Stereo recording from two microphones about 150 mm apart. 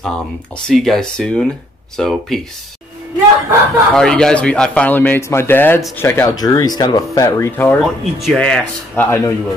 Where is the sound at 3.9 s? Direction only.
5° left (ahead or behind).